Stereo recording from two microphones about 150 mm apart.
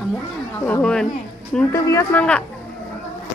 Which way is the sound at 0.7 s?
5° left (ahead or behind).